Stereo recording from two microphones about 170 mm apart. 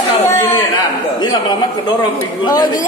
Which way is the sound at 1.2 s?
25° left (ahead or behind).